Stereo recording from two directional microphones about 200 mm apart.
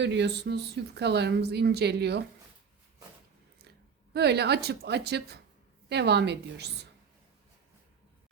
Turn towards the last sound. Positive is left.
turn(degrees=-55)  # may be behind; listen again after turning